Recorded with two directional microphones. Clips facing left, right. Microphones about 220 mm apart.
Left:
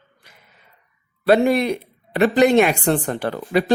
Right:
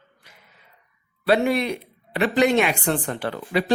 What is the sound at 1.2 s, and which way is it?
A man's voice, 45° left (ahead or behind).